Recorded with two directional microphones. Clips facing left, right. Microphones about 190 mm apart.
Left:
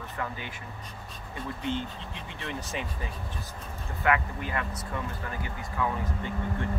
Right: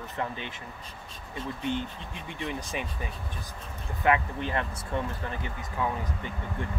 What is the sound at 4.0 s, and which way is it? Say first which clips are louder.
Speech: right 2 dB; 25° right (ahead or behind).